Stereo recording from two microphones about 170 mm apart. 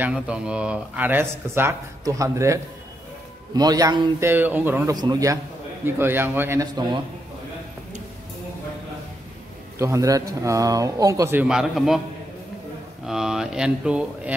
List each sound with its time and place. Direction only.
0.0 s speech: 5° right (ahead or behind); by 4.1 s 25° right (ahead or behind)
4.2 s speech: 10° right (ahead or behind)
4.9 s speech: 25° right (ahead or behind)
9.8 s speech: 20° right (ahead or behind)
11.4 s a man's voice: 5° right (ahead or behind)
13.0 s speech: centre (ahead or behind)